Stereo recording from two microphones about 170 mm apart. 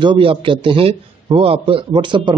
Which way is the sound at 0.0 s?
30° right (ahead or behind).